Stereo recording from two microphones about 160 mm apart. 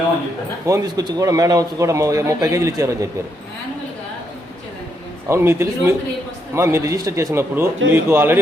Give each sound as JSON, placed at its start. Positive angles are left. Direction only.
{"t": 0.6, "sound": "a man's voice", "side_deg": -20}
{"t": 5.3, "sound": "speech", "side_deg": -15}